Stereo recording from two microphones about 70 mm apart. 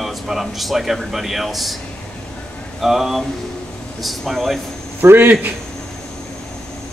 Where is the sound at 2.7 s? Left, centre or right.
Centre.